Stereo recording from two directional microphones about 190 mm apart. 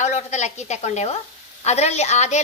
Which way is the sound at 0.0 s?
35° left (ahead or behind).